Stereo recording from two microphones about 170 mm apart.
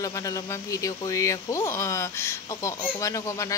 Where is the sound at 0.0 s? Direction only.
20° left (ahead or behind).